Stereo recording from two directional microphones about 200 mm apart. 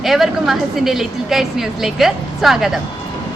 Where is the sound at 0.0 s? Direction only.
Centre (ahead or behind).